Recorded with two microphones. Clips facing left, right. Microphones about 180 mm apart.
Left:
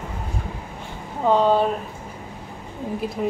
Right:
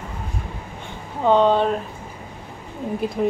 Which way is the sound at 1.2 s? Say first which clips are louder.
Right 1 dB; 5° left (ahead or behind).